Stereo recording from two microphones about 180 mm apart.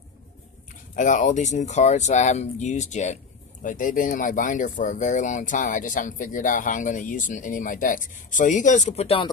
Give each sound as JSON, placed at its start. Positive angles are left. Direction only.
{"t": 0.9, "sound": "speech", "side_deg": 45}